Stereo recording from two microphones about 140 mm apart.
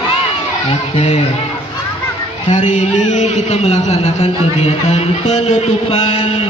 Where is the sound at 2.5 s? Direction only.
60° left (ahead or behind).